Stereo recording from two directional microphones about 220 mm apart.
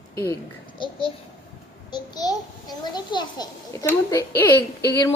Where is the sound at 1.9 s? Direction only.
20° left (ahead or behind).